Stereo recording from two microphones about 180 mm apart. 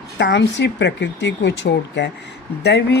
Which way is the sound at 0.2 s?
75° left (ahead or behind).